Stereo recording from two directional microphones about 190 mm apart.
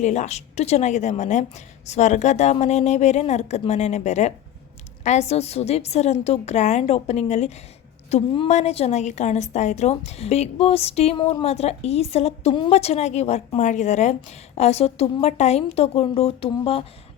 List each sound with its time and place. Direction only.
0.0 s a woman's voice: 40° left (ahead or behind)